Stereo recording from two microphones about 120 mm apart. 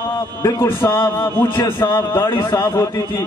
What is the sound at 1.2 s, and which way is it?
A man's voice, 40° left (ahead or behind).